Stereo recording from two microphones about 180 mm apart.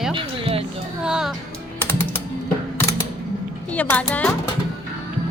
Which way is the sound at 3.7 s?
10° left (ahead or behind).